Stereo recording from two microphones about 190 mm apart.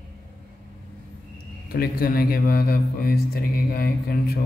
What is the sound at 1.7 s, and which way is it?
Speech, 50° left (ahead or behind).